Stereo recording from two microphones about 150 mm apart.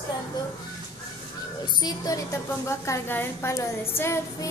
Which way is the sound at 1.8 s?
25° left (ahead or behind).